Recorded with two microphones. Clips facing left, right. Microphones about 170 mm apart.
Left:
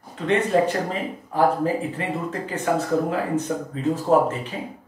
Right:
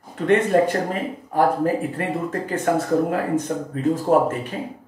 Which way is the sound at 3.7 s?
50° right (ahead or behind).